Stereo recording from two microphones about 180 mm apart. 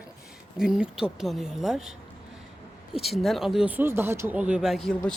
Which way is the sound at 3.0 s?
Centre (ahead or behind).